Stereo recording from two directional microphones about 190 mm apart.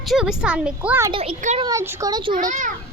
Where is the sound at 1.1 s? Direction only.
30° right (ahead or behind).